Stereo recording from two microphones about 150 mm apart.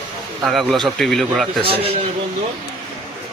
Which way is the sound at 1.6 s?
40° right (ahead or behind).